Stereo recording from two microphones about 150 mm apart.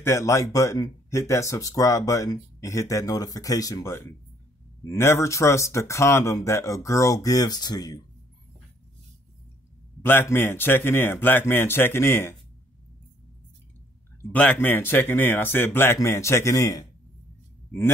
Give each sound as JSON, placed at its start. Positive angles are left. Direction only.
{"t": 0.0, "sound": "speech", "side_deg": 20}
{"t": 10.0, "sound": "speech", "side_deg": 15}
{"t": 14.3, "sound": "speech", "side_deg": 10}